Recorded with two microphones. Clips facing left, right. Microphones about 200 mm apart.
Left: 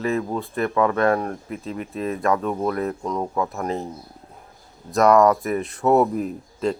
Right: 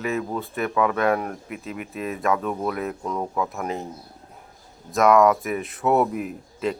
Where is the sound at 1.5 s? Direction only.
35° left (ahead or behind).